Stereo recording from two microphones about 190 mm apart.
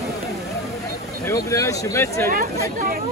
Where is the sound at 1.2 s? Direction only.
15° left (ahead or behind).